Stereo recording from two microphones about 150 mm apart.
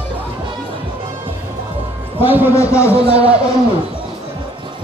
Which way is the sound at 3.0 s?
10° right (ahead or behind).